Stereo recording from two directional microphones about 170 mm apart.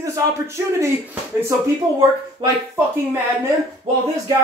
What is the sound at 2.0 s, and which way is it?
Speech, 20° right (ahead or behind).